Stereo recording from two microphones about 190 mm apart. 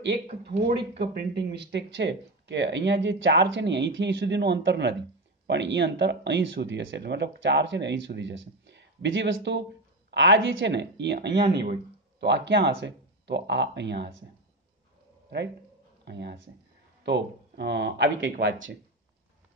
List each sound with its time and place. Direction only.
0.4 s speech: 60° right (ahead or behind)
12.2 s speech: 65° right (ahead or behind)
15.2 s speech: 65° right (ahead or behind)